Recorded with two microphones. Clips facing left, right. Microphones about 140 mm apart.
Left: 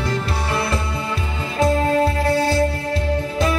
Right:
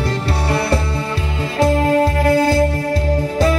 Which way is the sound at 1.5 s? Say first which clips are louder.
Right 3 dB; 40° right (ahead or behind).